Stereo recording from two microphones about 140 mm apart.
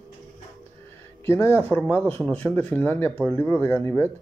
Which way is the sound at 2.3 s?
10° left (ahead or behind).